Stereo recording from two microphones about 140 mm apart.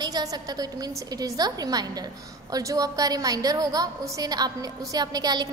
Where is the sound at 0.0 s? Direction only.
25° right (ahead or behind).